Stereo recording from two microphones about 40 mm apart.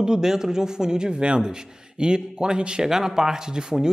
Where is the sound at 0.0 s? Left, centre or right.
Centre.